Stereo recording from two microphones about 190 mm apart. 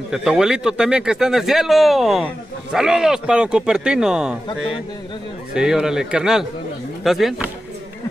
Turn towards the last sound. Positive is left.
turn(degrees=0)  # may be behind; listen again after turning